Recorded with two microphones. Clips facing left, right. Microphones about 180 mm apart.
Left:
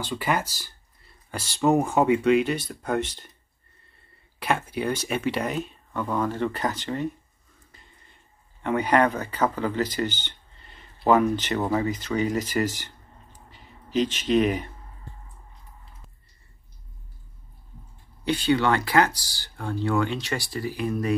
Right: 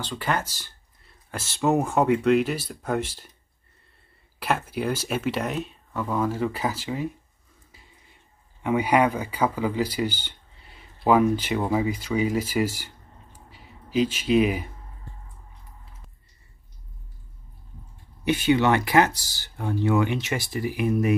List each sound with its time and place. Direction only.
0.1 s speech: 10° left (ahead or behind)
1.3 s speech: centre (ahead or behind)
4.4 s speech: 5° right (ahead or behind)
7.7 s a sound: 5° right (ahead or behind)
8.6 s speech: 10° right (ahead or behind)
18.2 s speech: 20° right (ahead or behind)